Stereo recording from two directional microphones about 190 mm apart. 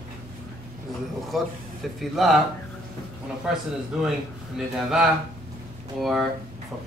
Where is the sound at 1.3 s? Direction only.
Centre (ahead or behind).